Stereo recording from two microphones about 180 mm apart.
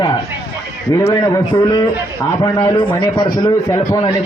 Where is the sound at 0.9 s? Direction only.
20° left (ahead or behind).